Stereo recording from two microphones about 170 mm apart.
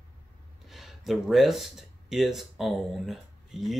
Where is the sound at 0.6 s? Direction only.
Centre (ahead or behind).